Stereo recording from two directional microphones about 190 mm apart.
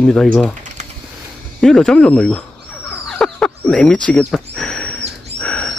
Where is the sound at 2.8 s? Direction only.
5° left (ahead or behind).